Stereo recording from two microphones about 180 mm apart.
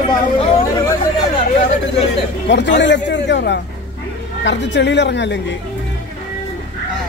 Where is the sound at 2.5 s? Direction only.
75° left (ahead or behind).